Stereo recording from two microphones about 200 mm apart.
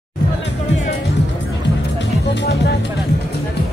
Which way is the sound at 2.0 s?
60° left (ahead or behind).